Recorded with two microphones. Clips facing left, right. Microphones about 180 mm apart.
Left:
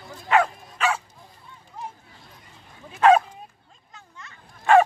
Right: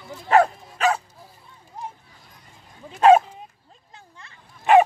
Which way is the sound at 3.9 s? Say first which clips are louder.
Left 1 dB; 30° right (ahead or behind).